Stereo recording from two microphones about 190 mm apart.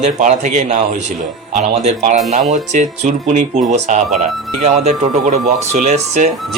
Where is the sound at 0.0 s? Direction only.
40° right (ahead or behind).